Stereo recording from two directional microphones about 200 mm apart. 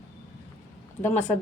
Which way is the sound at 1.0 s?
10° left (ahead or behind).